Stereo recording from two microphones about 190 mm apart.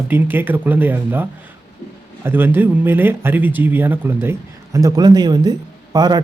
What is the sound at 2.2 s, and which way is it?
Speech, 10° right (ahead or behind).